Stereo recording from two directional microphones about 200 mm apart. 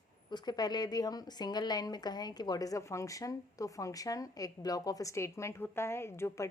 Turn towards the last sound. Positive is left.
turn(degrees=10)  # may be behind; listen again after turning